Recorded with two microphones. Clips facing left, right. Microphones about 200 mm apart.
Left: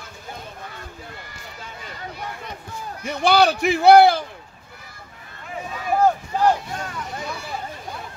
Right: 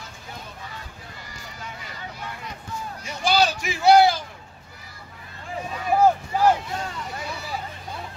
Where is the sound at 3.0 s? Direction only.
60° left (ahead or behind).